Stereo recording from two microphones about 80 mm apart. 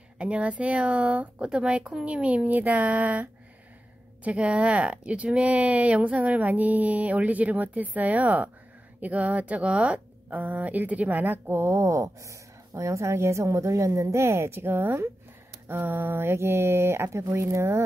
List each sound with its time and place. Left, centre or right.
0.2 s speech: centre; by 17.8 s right